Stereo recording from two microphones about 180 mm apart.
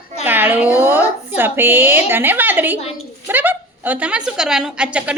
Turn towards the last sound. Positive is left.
turn(degrees=-5)  # may be behind; listen again after turning